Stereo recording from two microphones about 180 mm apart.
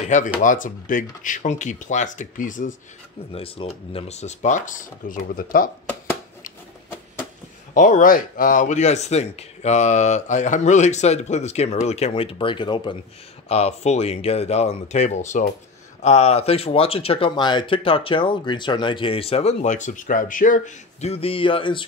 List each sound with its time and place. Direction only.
0.4 s speech: 45° left (ahead or behind)
3.3 s speech: 30° left (ahead or behind); by 5.7 s 50° left (ahead or behind)
7.7 s speech: 45° left (ahead or behind); by 21.8 s 30° left (ahead or behind)